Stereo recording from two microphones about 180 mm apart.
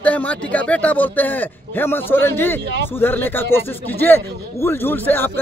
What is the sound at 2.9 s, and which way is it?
Speech, 10° left (ahead or behind).